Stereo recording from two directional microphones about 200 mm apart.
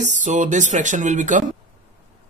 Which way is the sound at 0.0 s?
35° right (ahead or behind).